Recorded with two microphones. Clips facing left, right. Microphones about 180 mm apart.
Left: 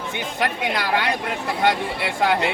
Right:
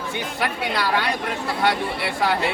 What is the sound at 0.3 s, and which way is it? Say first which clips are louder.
Speech: left 2 dB; 20° left (ahead or behind).